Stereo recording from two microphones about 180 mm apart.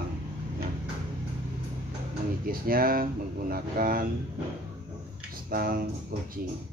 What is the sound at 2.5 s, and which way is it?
Speech, 55° right (ahead or behind).